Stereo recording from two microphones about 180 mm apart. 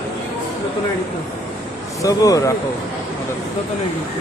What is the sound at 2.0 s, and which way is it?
Speech, 20° left (ahead or behind).